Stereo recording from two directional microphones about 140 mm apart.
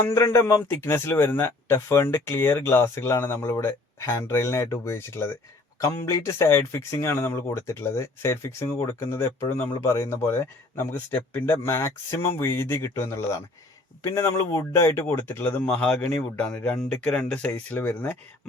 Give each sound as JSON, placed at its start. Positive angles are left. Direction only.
{"t": 0.1, "sound": "speech", "side_deg": 20}